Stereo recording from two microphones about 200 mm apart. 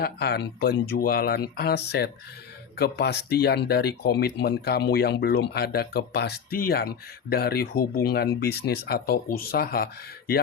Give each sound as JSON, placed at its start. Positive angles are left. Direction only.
{"t": 0.0, "sound": "speech", "side_deg": 55}